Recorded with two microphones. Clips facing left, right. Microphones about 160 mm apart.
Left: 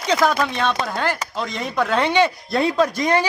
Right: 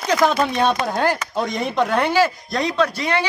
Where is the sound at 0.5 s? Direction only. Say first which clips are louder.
Right 3 dB; 40° right (ahead or behind).